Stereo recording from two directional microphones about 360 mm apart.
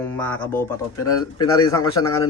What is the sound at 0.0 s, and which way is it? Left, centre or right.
Speech, centre.